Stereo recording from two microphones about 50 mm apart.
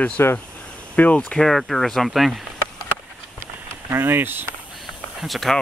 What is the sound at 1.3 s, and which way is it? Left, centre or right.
Speech, centre.